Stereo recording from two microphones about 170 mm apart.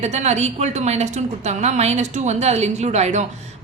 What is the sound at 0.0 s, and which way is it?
A woman's voice, 40° right (ahead or behind).